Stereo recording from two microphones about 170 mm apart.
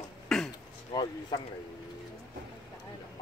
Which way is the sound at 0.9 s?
30° left (ahead or behind).